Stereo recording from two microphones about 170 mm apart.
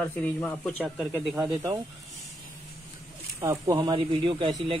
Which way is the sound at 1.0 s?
5° right (ahead or behind).